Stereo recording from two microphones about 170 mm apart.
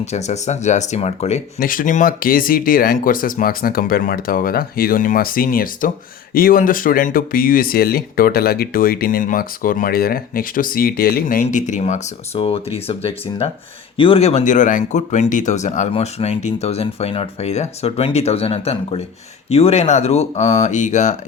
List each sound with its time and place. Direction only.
0.0 s speech: 40° left (ahead or behind)
1.5 s speech: 55° left (ahead or behind)